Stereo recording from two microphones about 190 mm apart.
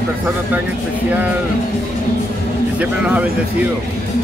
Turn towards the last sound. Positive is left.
turn(degrees=-5)  # may be behind; listen again after turning